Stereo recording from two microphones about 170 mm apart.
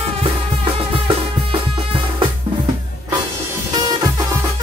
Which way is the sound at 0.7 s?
30° right (ahead or behind).